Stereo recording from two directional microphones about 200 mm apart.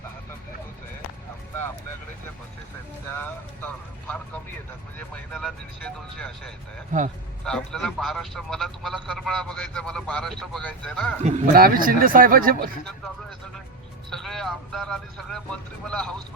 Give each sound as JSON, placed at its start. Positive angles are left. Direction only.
{"t": 3.2, "sound": "speech", "side_deg": 10}
{"t": 6.9, "sound": "speech", "side_deg": -40}
{"t": 7.4, "sound": "speech", "side_deg": 5}
{"t": 11.2, "sound": "speech", "side_deg": -35}
{"t": 14.1, "sound": "speech", "side_deg": 0}